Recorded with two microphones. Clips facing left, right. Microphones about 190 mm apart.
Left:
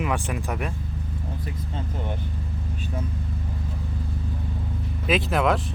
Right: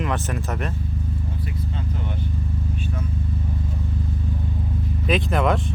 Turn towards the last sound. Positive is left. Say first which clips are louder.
# right 1 dB
turn(degrees=0)  # may be behind; listen again after turning